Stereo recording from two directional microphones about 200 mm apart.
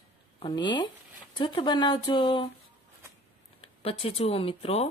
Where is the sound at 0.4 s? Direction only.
20° left (ahead or behind).